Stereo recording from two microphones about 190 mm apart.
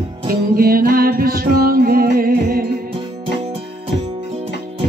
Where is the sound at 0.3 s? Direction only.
50° right (ahead or behind).